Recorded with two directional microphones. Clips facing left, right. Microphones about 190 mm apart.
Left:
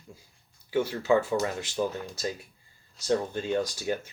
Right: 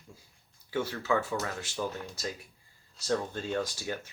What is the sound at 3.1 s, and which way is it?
Speech, 15° left (ahead or behind).